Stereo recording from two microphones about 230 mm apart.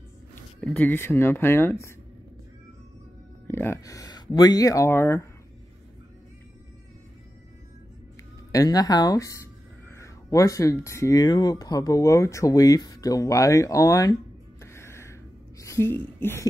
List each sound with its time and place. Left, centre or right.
0.6 s speech: centre
3.4 s speech: centre
8.5 s speech: centre
14.6 s music: centre
15.6 s speech: centre
16.2 s music: centre